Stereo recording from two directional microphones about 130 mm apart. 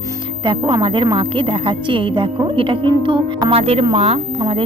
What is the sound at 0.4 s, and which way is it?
Speech, 40° right (ahead or behind).